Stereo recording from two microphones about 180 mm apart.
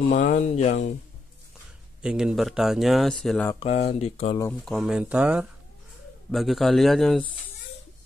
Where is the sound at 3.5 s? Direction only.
35° left (ahead or behind).